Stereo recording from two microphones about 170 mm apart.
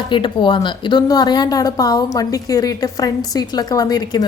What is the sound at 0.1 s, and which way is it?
Speech, 30° left (ahead or behind).